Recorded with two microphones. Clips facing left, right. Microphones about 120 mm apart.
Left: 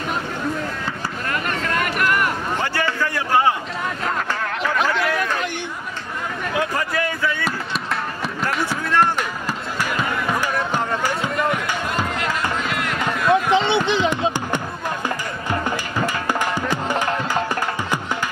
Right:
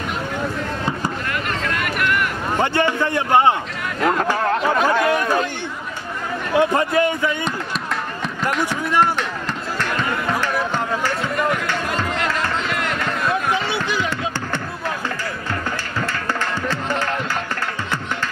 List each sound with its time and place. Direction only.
1.3 s vehicle: 40° left (ahead or behind)
2.6 s speech: 25° right (ahead or behind)
4.4 s a sound: 35° right (ahead or behind)
4.7 s chatter: 20° right (ahead or behind)
6.5 s speech: 25° right (ahead or behind)
8.5 s speech: 5° left (ahead or behind)
9.8 s music: 10° left (ahead or behind)
13.0 s music: 25° left (ahead or behind)
16.0 s music: 15° left (ahead or behind)